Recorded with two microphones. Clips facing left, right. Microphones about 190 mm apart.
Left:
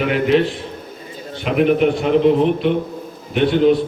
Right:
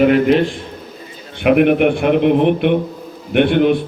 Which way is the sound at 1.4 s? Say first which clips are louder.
Right 3 dB; 60° right (ahead or behind).